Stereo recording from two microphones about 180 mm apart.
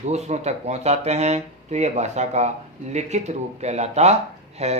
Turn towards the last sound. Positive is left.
turn(degrees=-35)  # may be behind; listen again after turning